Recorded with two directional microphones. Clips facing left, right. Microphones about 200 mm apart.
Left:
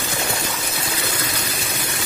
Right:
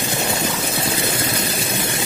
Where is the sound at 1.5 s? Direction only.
25° right (ahead or behind).